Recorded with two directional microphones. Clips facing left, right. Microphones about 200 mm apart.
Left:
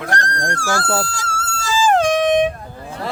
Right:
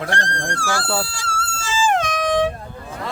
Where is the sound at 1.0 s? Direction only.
45° left (ahead or behind); by 2.5 s 20° left (ahead or behind).